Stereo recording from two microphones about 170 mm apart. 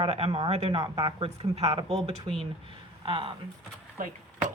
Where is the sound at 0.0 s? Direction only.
35° right (ahead or behind).